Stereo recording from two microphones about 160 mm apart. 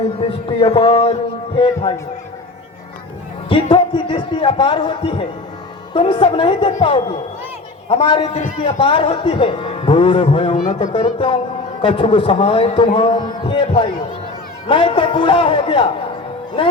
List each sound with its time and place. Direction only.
0.2 s a man's voice: 35° left (ahead or behind)
3.5 s a man's voice: 30° left (ahead or behind)